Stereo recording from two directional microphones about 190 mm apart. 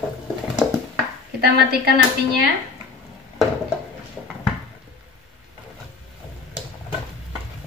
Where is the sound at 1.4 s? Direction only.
55° right (ahead or behind).